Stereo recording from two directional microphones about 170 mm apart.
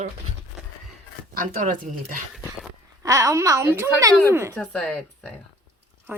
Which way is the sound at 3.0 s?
20° right (ahead or behind).